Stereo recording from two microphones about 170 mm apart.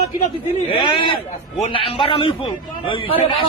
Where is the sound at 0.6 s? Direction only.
30° left (ahead or behind).